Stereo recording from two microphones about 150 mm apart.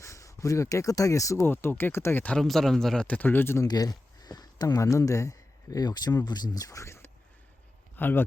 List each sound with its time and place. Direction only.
0.0 s speech: 20° left (ahead or behind)
3.7 s speech: 25° left (ahead or behind)